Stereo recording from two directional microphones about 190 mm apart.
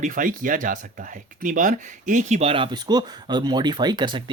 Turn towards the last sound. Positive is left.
turn(degrees=-25)  # may be behind; listen again after turning